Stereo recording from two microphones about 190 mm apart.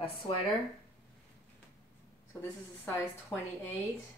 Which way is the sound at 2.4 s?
10° left (ahead or behind).